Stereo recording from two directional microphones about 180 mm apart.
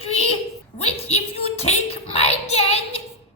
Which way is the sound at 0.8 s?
35° left (ahead or behind).